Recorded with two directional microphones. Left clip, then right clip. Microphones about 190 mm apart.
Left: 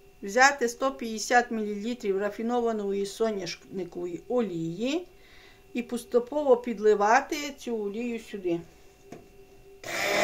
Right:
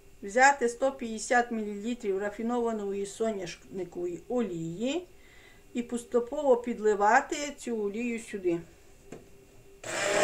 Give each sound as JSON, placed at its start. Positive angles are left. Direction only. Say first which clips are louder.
{"t": 0.2, "sound": "speech", "louder": "left 1 dB", "side_deg": 35}